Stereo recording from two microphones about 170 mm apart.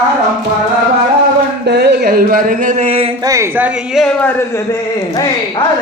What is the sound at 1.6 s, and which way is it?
Speech, 75° right (ahead or behind).